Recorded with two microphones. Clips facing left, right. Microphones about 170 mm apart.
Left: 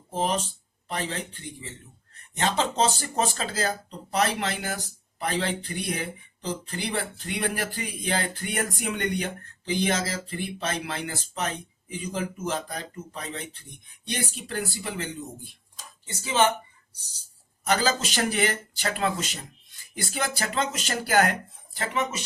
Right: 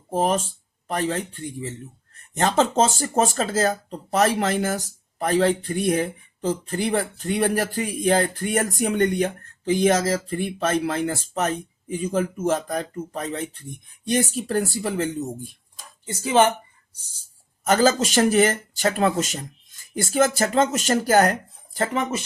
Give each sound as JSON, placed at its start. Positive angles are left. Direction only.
{"t": 0.1, "sound": "speech", "side_deg": -50}
{"t": 17.7, "sound": "speech", "side_deg": -45}